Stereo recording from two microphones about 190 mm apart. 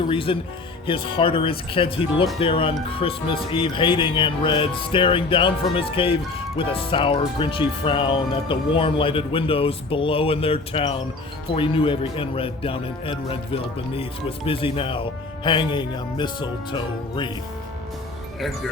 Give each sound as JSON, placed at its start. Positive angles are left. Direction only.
{"t": 0.1, "sound": "speech", "side_deg": 30}